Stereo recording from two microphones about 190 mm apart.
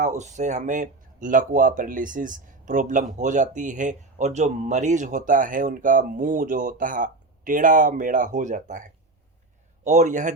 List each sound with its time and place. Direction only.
0.0 s a man's voice: 35° right (ahead or behind)